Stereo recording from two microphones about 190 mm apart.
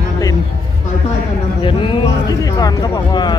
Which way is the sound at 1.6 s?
25° left (ahead or behind).